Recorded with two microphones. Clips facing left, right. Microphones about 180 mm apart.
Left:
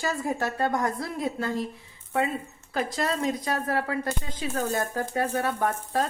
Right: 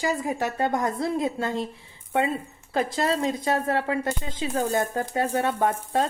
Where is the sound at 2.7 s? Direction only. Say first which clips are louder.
Right 3 dB; 30° right (ahead or behind).